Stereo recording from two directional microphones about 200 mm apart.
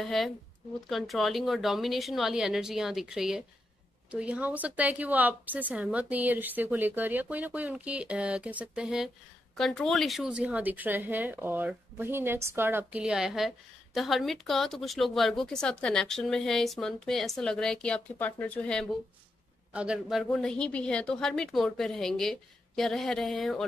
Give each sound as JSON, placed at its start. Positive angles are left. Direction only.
{"t": 0.0, "sound": "a woman's voice", "side_deg": 0}